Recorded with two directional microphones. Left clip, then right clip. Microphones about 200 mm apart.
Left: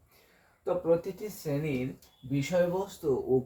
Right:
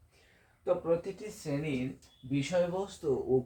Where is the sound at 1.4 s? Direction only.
10° left (ahead or behind).